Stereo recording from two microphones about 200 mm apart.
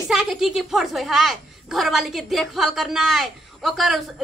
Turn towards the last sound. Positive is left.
turn(degrees=0)  # may be behind; listen again after turning